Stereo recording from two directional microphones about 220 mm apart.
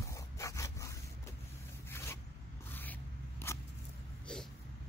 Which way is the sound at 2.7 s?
10° left (ahead or behind).